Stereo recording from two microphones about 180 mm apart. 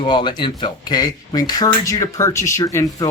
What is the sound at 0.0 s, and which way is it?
Speech, 25° left (ahead or behind).